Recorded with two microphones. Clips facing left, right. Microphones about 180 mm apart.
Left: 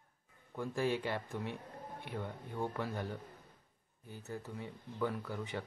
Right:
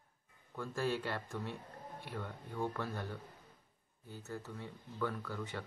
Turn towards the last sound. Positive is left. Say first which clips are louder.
# left 2 dB
turn(degrees=15)  # may be behind; listen again after turning